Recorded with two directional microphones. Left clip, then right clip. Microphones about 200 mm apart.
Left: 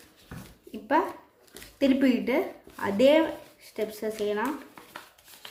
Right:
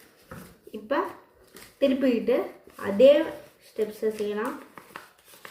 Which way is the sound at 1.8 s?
50° left (ahead or behind).